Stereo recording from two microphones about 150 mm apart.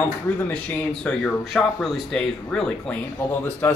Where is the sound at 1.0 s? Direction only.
5° left (ahead or behind).